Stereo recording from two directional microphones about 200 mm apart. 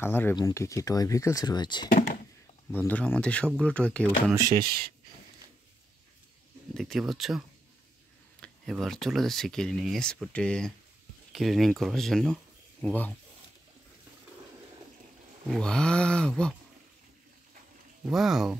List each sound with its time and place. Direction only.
0.0 s speech: 10° left (ahead or behind)
2.7 s speech: 10° left (ahead or behind)
4.5 s speech: 50° right (ahead or behind)
6.7 s speech: centre (ahead or behind)
15.4 s speech: 5° left (ahead or behind)
18.0 s speech: centre (ahead or behind)